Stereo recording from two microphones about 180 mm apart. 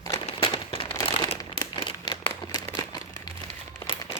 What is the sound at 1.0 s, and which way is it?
Crumpling, 25° left (ahead or behind).